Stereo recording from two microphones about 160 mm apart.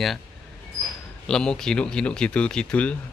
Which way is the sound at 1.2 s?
5° left (ahead or behind).